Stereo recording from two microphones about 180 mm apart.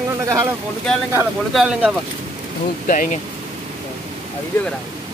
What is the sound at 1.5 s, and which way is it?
Speech, 5° right (ahead or behind).